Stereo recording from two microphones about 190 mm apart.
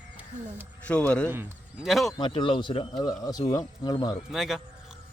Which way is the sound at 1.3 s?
10° right (ahead or behind).